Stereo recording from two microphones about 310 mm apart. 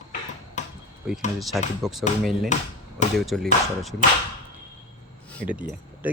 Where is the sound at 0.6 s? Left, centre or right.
Left.